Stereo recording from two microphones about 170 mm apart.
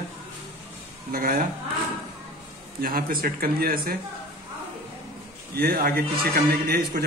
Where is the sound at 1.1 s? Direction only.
60° right (ahead or behind).